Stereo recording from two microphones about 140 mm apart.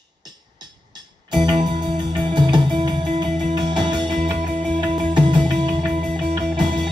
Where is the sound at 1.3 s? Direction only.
30° right (ahead or behind).